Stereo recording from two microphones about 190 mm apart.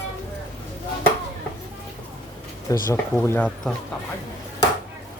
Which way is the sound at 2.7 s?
15° left (ahead or behind).